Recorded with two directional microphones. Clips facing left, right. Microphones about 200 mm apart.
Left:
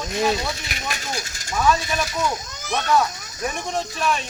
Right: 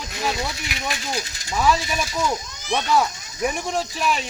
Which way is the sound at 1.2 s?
45° left (ahead or behind).